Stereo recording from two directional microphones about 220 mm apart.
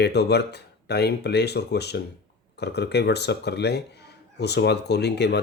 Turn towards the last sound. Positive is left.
turn(degrees=50)  # may be behind; listen again after turning